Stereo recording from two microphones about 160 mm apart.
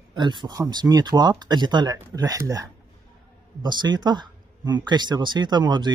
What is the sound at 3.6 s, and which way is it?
Speech, 25° right (ahead or behind).